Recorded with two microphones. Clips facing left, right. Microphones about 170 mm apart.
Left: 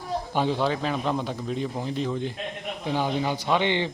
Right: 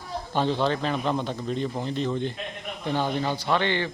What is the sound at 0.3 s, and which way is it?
A man's voice, 10° left (ahead or behind).